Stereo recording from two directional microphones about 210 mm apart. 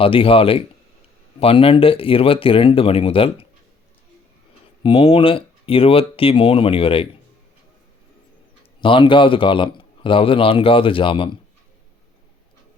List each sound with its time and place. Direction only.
0.0 s a man's voice: 25° left (ahead or behind)
4.8 s a man's voice: 25° left (ahead or behind)
8.8 s a man's voice: 25° left (ahead or behind)